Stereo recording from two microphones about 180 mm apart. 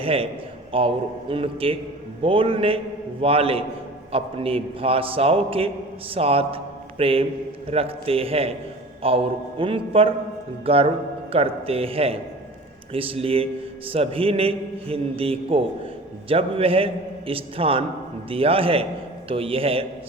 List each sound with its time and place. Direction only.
0.0 s a man's voice: 30° right (ahead or behind)